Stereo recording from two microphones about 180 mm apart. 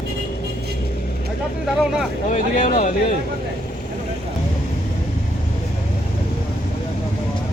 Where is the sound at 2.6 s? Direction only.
45° left (ahead or behind).